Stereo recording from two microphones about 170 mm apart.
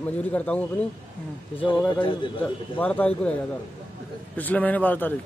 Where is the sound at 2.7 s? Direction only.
10° left (ahead or behind).